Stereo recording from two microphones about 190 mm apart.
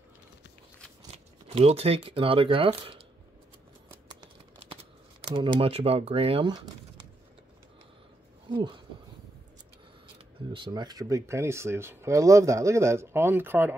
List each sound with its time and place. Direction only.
1.1 s speech: 35° right (ahead or behind)
5.3 s speech: 25° right (ahead or behind)
8.5 s speech: 25° right (ahead or behind)
10.5 s speech: 25° right (ahead or behind)